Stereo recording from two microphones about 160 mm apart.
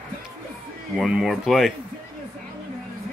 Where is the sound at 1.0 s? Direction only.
Centre (ahead or behind).